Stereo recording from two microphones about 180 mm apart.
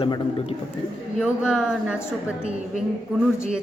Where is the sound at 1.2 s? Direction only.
5° right (ahead or behind).